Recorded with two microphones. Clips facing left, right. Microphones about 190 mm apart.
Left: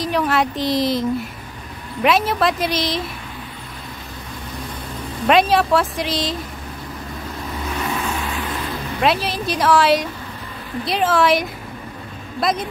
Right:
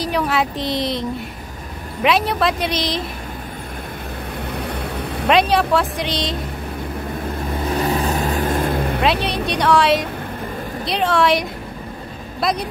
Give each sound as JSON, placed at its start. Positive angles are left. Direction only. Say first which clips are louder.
{"t": 0.0, "sound": "speech", "louder": "left 1 dB", "side_deg": 0}
{"t": 2.0, "sound": "speech", "louder": "even", "side_deg": 0}
{"t": 4.5, "sound": "vehicle", "louder": "right 5 dB", "side_deg": -65}
{"t": 5.3, "sound": "speech", "louder": "left 1 dB", "side_deg": 0}
{"t": 7.7, "sound": "vehicle", "louder": "right 5 dB", "side_deg": -35}
{"t": 9.0, "sound": "speech", "louder": "left 4 dB", "side_deg": 0}